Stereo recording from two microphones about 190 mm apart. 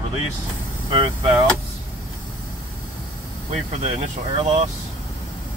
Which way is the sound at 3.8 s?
30° right (ahead or behind).